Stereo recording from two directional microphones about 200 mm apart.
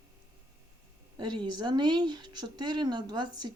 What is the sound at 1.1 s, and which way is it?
Speech, 20° right (ahead or behind).